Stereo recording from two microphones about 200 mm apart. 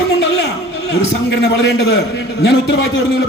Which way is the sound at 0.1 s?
55° left (ahead or behind).